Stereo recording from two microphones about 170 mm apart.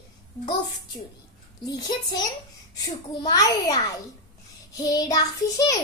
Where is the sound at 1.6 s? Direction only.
25° left (ahead or behind).